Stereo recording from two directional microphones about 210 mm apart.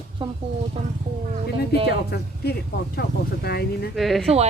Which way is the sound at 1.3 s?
25° right (ahead or behind).